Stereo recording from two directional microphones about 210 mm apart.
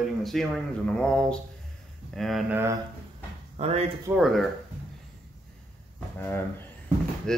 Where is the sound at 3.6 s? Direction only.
30° right (ahead or behind).